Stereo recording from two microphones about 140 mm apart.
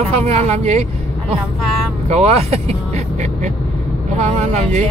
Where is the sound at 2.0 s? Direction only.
50° right (ahead or behind).